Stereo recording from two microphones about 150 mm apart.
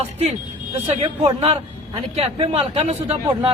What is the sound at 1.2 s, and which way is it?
A man's voice, 35° right (ahead or behind).